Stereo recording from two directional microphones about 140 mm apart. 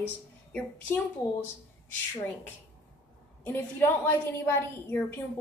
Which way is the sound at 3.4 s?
15° left (ahead or behind).